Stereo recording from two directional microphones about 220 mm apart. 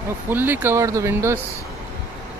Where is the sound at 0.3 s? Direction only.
10° right (ahead or behind).